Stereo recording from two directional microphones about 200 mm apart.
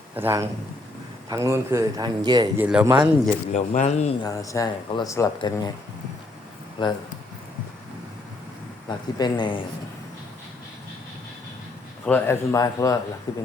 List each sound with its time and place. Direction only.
0.2 s a man's voice: 10° right (ahead or behind)
2.6 s speech: 5° right (ahead or behind)
3.5 s speech: 35° left (ahead or behind)
4.2 s speech: 15° left (ahead or behind)
6.8 s a man's voice: 25° left (ahead or behind)
8.9 s a man's voice: 20° left (ahead or behind)
12.0 s a man's voice: 10° left (ahead or behind)